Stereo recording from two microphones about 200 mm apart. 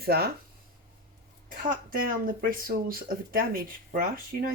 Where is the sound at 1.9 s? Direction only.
45° right (ahead or behind).